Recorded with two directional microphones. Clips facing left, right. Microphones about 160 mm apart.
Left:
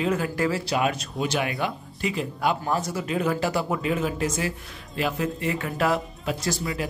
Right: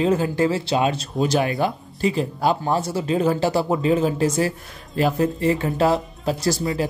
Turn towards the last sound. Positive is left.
turn(degrees=-35)  # may be behind; listen again after turning